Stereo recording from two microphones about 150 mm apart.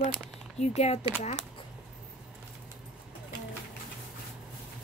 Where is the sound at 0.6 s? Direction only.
45° left (ahead or behind).